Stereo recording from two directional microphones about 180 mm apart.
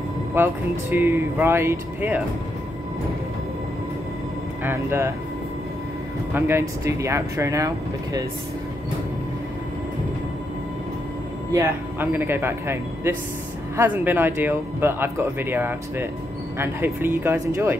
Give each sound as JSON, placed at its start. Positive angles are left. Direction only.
{"t": 0.3, "sound": "speech", "side_deg": -10}
{"t": 4.6, "sound": "speech", "side_deg": -15}
{"t": 6.3, "sound": "speech", "side_deg": -15}
{"t": 11.5, "sound": "speech", "side_deg": -10}